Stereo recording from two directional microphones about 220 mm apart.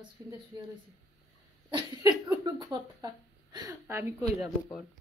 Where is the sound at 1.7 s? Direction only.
15° right (ahead or behind).